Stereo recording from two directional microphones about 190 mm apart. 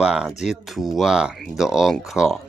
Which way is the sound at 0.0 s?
5° right (ahead or behind).